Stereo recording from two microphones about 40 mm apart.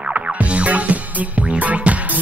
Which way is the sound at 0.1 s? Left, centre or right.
Right.